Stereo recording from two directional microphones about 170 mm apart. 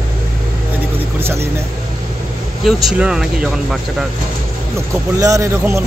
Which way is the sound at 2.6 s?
Centre (ahead or behind).